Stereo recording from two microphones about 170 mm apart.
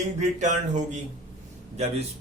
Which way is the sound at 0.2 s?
45° right (ahead or behind).